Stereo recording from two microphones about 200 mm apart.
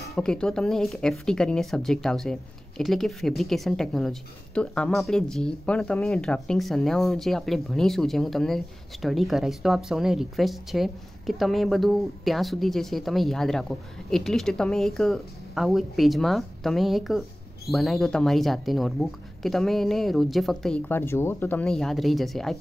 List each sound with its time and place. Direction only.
0.1 s a woman's voice: 5° left (ahead or behind)